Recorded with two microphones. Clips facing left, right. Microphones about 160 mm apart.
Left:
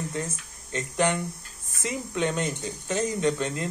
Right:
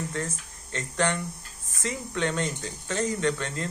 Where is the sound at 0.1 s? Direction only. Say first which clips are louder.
Even; 15° left (ahead or behind).